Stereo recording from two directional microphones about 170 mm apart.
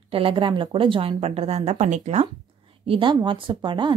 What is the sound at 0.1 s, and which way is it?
A woman's voice, 30° right (ahead or behind).